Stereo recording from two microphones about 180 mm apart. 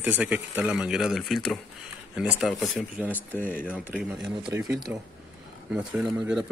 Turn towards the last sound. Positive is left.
turn(degrees=-5)  # may be behind; listen again after turning